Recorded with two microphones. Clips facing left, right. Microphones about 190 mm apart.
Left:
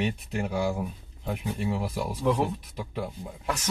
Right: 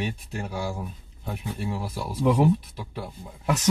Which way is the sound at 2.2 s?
15° right (ahead or behind).